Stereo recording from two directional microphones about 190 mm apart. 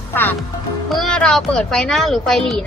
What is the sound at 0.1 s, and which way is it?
Music, 10° left (ahead or behind).